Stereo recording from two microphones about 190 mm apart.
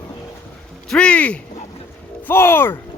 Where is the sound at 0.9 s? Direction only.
5° left (ahead or behind).